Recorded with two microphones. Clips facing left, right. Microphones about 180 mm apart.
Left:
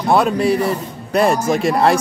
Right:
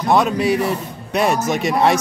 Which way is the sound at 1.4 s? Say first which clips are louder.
Left 3 dB; 30° left (ahead or behind).